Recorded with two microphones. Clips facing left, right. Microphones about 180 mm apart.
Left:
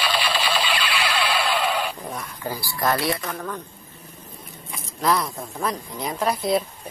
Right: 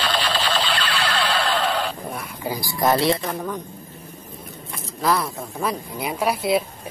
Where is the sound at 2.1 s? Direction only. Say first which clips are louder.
Right 2 dB; 15° right (ahead or behind).